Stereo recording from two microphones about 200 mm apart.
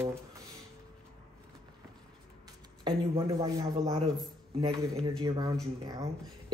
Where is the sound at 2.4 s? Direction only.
20° right (ahead or behind).